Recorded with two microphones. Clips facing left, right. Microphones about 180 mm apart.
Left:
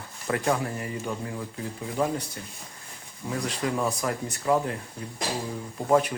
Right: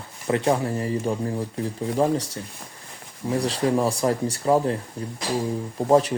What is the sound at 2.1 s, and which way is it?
Speech, 90° right.